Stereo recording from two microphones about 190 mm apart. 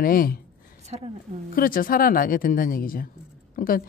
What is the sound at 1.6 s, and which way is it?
A man's voice, 45° left (ahead or behind).